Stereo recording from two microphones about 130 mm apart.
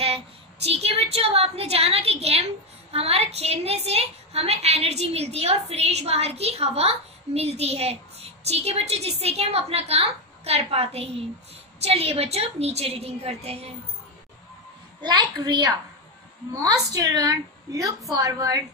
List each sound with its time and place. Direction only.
0.7 s a woman's voice: 50° right (ahead or behind)
15.0 s a child's voice: 35° right (ahead or behind)